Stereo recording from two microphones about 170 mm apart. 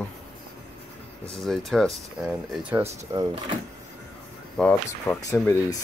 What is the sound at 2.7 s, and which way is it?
Speech, 15° right (ahead or behind).